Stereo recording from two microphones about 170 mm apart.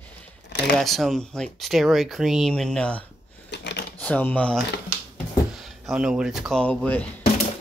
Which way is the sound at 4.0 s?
10° left (ahead or behind).